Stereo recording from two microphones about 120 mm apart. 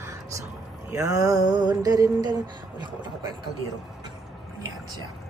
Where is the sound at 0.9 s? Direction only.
25° right (ahead or behind).